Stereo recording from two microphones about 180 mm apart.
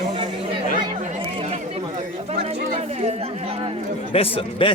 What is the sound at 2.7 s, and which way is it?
Speech, 35° right (ahead or behind).